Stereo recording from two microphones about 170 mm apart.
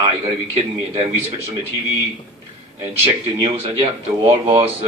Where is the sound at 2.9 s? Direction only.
35° right (ahead or behind).